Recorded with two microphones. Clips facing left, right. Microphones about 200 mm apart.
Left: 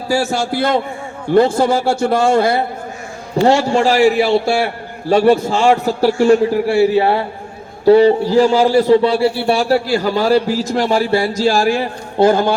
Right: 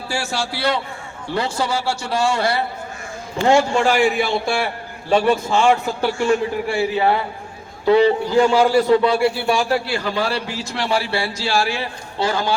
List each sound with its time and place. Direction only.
0.1 s a man's voice: 45° left (ahead or behind)
3.4 s a man's voice: 40° left (ahead or behind)